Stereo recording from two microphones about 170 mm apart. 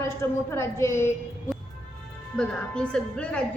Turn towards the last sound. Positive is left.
turn(degrees=5)  # may be behind; listen again after turning